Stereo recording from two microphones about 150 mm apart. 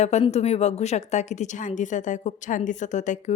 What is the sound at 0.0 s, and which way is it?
A woman's voice, 45° left (ahead or behind).